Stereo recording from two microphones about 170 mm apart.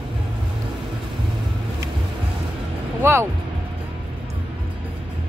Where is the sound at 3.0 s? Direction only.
15° right (ahead or behind).